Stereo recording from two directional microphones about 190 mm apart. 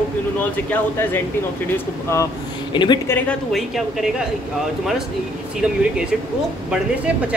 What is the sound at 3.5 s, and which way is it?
Speech, centre (ahead or behind).